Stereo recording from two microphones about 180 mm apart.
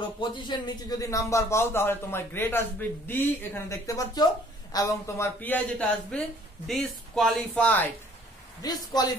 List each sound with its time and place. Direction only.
0.2 s a man's voice: 25° left (ahead or behind); by 7.9 s 10° left (ahead or behind)
8.6 s speech: 20° left (ahead or behind)